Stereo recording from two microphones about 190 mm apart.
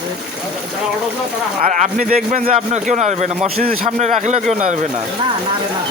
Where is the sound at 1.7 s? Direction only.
40° right (ahead or behind).